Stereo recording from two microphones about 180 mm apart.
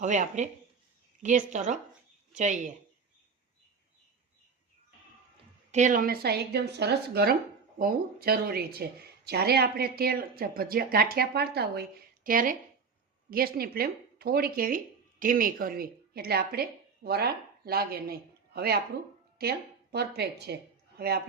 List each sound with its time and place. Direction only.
0.0 s a woman's voice: 45° right (ahead or behind)
5.7 s a woman's voice: 45° right (ahead or behind); by 20.6 s 65° right (ahead or behind)